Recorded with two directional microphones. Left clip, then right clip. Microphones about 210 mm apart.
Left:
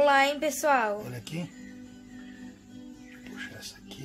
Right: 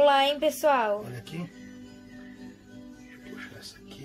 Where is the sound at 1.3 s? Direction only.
55° left (ahead or behind).